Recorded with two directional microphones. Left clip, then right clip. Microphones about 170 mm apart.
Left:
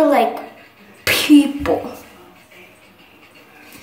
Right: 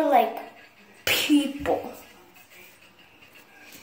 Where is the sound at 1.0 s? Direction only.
35° left (ahead or behind).